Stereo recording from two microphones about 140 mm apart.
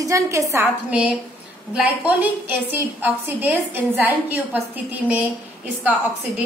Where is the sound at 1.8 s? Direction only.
10° right (ahead or behind).